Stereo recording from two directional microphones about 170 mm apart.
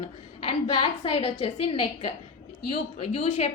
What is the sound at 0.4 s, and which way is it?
A woman's voice, 30° left (ahead or behind).